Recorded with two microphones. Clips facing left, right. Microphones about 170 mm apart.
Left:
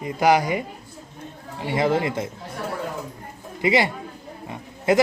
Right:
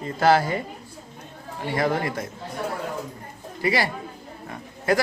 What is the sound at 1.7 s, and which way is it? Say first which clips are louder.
Speech: left 3 dB; 20° left (ahead or behind).